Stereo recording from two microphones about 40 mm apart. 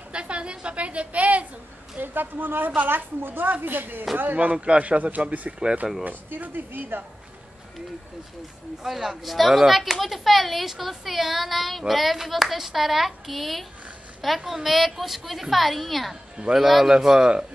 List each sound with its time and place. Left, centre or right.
0.1 s a sound: right
2.0 s speech: right
8.8 s speech: centre